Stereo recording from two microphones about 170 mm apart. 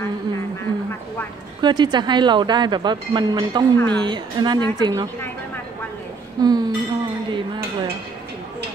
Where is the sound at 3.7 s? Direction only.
5° left (ahead or behind).